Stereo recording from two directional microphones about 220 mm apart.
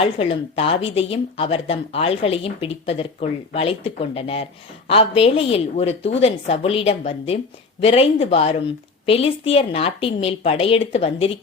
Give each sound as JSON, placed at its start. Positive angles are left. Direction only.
{"t": 0.0, "sound": "speech", "side_deg": 25}